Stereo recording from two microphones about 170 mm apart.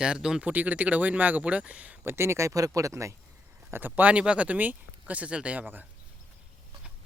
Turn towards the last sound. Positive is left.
turn(degrees=-10)  # may be behind; listen again after turning